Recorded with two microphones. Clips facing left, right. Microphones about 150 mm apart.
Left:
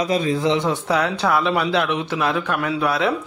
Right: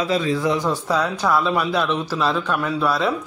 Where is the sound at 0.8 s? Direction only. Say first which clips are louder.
Left 1 dB; 70° left (ahead or behind).